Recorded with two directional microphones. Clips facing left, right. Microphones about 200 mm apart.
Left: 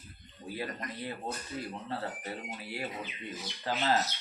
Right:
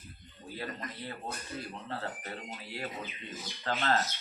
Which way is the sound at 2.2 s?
15° left (ahead or behind).